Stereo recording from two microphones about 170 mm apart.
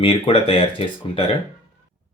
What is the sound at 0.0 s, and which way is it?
Speech, 30° left (ahead or behind).